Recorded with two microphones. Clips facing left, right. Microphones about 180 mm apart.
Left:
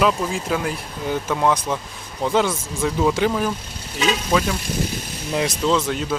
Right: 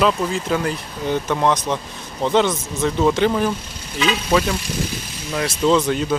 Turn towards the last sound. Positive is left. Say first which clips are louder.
# right 3 dB
turn(degrees=0)  # may be behind; listen again after turning